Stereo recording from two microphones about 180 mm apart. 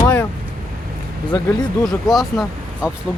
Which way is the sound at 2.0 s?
Centre (ahead or behind).